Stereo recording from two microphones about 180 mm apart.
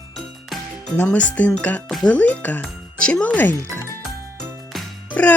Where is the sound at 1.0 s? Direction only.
10° left (ahead or behind).